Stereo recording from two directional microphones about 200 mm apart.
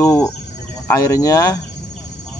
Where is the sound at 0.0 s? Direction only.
15° left (ahead or behind).